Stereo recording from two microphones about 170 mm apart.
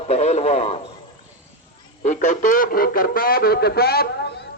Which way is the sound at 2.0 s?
45° left (ahead or behind).